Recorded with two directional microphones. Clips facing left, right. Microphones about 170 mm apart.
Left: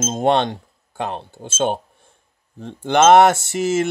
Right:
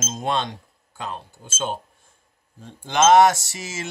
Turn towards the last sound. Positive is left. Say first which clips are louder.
# left 14 dB
turn(degrees=60)  # may be behind; listen again after turning